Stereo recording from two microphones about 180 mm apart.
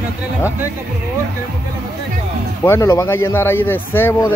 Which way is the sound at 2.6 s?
15° left (ahead or behind).